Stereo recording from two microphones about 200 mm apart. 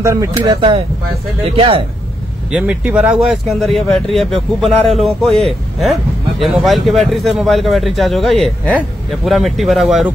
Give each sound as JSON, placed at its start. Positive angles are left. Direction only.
{"t": 0.0, "sound": "speech", "side_deg": -15}
{"t": 2.5, "sound": "a man's voice", "side_deg": -5}